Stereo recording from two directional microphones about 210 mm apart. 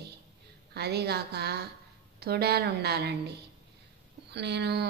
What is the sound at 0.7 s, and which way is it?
Speech, 50° right (ahead or behind).